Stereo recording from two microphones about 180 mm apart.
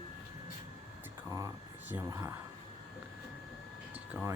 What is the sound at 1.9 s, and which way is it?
Speech, 15° right (ahead or behind).